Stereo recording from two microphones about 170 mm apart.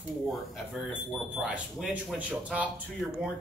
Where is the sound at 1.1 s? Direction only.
Centre (ahead or behind).